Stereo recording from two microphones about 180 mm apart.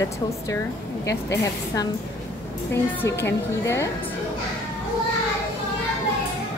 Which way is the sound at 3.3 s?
15° left (ahead or behind).